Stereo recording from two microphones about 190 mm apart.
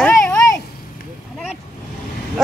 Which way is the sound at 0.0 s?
5° left (ahead or behind).